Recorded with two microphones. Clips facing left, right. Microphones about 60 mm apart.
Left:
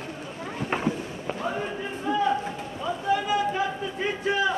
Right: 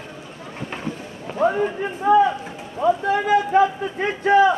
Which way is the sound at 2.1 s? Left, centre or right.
Right.